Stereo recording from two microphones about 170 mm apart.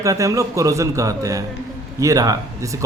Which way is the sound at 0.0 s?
20° right (ahead or behind).